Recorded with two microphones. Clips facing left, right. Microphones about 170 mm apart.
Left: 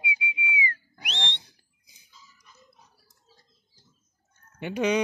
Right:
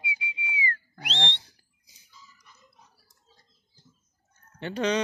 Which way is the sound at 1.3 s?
15° left (ahead or behind).